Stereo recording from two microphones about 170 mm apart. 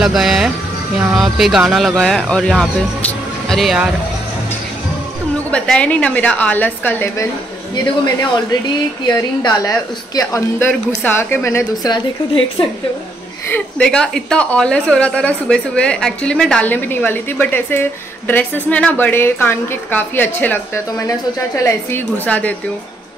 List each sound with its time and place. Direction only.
0.0 s speech: centre (ahead or behind)
5.5 s a woman's voice: 5° left (ahead or behind); by 12.4 s 25° left (ahead or behind)
13.5 s a woman's voice: 5° left (ahead or behind)